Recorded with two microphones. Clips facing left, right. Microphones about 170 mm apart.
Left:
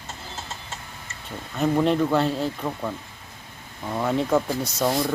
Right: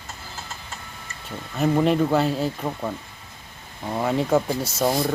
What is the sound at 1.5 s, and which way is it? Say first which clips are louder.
Speech: right 1 dB; 5° right (ahead or behind).